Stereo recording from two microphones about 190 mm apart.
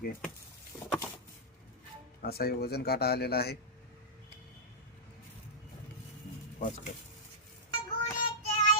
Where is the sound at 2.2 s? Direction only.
55° left (ahead or behind).